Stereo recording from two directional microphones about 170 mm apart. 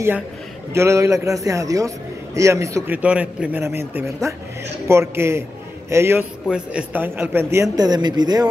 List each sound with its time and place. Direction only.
0.7 s a man's voice: 15° right (ahead or behind)